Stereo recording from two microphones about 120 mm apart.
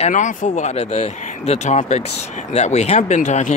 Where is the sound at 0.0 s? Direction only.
90° left.